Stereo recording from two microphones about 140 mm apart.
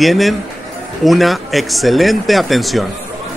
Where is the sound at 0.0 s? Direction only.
Centre (ahead or behind).